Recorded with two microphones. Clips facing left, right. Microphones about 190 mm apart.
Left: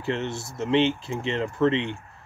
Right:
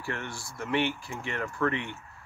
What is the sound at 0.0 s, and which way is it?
Speech, 20° left (ahead or behind).